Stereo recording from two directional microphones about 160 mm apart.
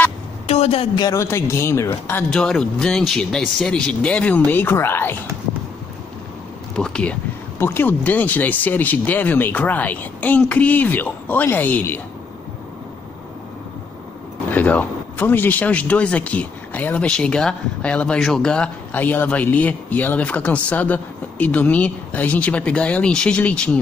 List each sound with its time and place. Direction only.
0.5 s a man's voice: 40° left (ahead or behind)
1.0 s speech: 20° left (ahead or behind)
6.8 s speech: 5° left (ahead or behind)
14.5 s speech: 10° left (ahead or behind)